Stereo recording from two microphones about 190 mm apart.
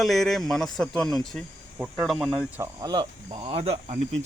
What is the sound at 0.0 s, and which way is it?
Speech, centre (ahead or behind).